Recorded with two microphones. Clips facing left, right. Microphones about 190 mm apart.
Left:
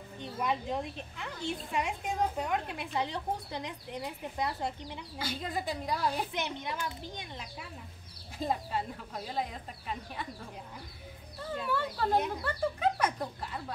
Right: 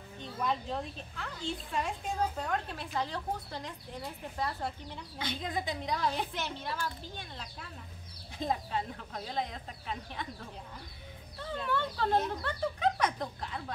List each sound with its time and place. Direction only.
0.2 s speech: 15° left (ahead or behind)
11.3 s speech: 5° left (ahead or behind)